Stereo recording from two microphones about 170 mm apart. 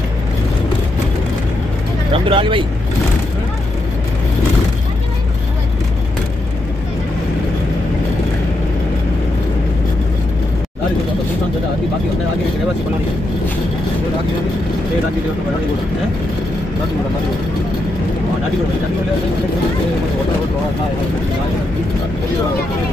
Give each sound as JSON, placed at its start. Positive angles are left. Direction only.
{"t": 2.2, "sound": "speech", "side_deg": -30}